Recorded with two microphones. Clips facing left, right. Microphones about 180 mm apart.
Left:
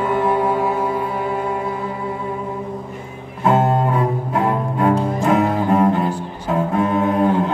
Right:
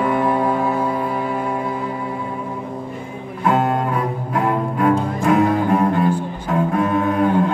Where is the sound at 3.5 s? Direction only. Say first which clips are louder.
Left 2 dB; 25° left (ahead or behind).